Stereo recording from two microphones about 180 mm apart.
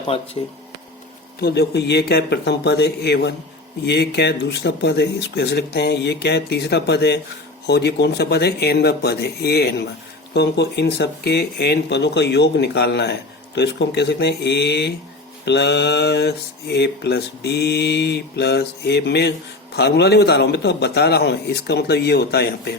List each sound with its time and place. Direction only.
0.1 s speech: 30° left (ahead or behind)
1.4 s a man's voice: 60° left (ahead or behind)